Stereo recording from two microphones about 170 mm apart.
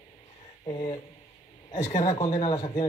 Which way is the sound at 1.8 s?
20° left (ahead or behind).